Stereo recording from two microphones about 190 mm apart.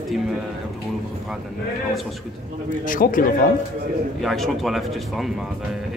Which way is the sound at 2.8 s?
45° left (ahead or behind).